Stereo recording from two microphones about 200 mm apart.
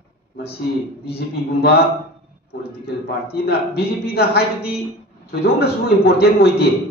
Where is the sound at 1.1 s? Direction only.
55° left (ahead or behind).